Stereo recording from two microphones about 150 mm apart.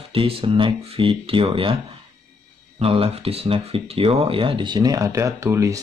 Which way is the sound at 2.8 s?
40° right (ahead or behind).